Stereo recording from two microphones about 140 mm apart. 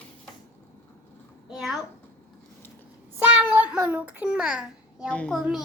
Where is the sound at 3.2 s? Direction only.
10° right (ahead or behind).